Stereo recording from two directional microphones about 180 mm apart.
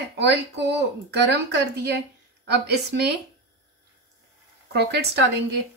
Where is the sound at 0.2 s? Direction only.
70° right (ahead or behind).